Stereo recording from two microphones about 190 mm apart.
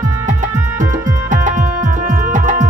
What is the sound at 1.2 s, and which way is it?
Music, 40° right (ahead or behind).